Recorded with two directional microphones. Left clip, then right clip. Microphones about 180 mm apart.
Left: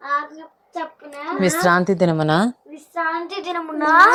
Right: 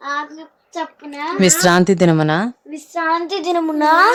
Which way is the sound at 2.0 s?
15° right (ahead or behind).